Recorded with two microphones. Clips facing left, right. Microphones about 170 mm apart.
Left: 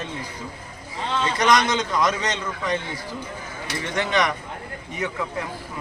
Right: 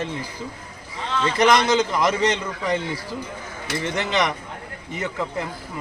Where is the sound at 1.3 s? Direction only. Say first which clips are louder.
Right 3 dB; 25° right (ahead or behind).